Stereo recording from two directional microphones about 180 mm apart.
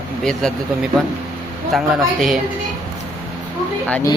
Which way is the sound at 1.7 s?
Centre (ahead or behind).